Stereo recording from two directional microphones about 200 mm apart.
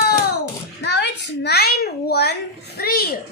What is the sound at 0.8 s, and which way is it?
A child's voice, 55° left (ahead or behind).